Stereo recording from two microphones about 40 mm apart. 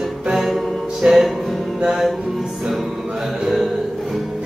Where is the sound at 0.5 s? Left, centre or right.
Centre.